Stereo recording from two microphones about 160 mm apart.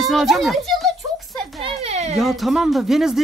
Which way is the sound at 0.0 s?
Centre (ahead or behind).